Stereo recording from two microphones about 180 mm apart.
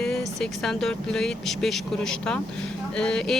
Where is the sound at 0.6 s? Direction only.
Centre (ahead or behind).